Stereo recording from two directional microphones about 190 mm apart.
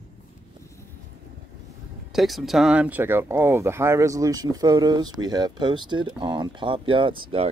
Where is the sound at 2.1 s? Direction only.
Centre (ahead or behind).